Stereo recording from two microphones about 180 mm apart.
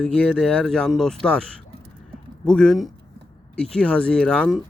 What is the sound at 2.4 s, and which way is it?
Speech, 5° left (ahead or behind).